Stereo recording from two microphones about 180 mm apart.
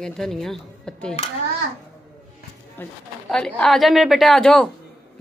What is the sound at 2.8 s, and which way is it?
A woman's voice, 5° left (ahead or behind).